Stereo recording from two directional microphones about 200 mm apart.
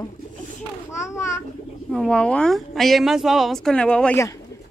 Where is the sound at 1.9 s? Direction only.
5° left (ahead or behind).